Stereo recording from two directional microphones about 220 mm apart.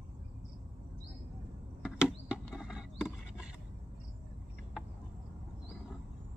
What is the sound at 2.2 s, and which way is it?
Mechanisms, 5° right (ahead or behind).